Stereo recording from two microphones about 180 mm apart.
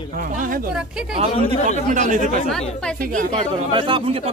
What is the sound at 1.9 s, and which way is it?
Speech, 45° right (ahead or behind).